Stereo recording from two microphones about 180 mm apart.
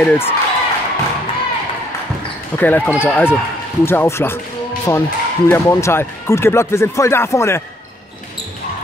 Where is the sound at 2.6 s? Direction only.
10° left (ahead or behind).